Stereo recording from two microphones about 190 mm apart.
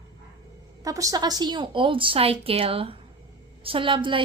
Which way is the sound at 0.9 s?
20° right (ahead or behind).